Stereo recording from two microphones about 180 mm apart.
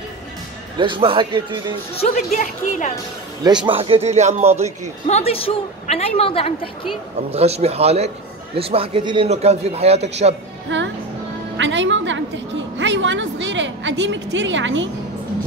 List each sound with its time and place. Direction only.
0.7 s a man's voice: 25° right (ahead or behind)
2.0 s a woman's voice: 40° left (ahead or behind)
3.6 s a man's voice: 30° right (ahead or behind)
5.0 s a woman's voice: 35° left (ahead or behind)
7.2 s a man's voice: 35° right (ahead or behind)
10.7 s music: 90° right
11.5 s a woman's voice: 90° right